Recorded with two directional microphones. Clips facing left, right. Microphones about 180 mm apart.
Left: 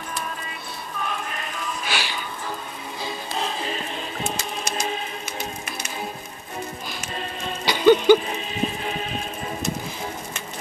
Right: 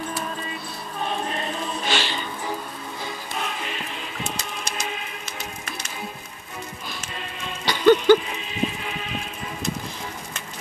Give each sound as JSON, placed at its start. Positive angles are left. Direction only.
{"t": 1.0, "sound": "music", "side_deg": -30}
{"t": 1.9, "sound": "music", "side_deg": 10}
{"t": 3.3, "sound": "music", "side_deg": 30}
{"t": 7.6, "sound": "music", "side_deg": 10}
{"t": 8.3, "sound": "music", "side_deg": 40}